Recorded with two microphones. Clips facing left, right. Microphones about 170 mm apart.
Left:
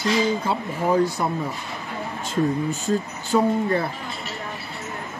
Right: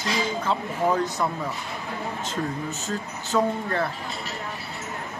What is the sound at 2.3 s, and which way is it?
Speech, 10° left (ahead or behind).